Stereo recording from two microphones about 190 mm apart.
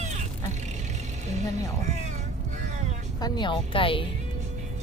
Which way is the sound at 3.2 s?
25° left (ahead or behind).